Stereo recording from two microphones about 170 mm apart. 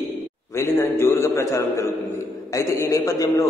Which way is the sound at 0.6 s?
15° left (ahead or behind).